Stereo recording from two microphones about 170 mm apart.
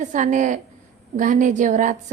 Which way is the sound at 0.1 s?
50° right (ahead or behind).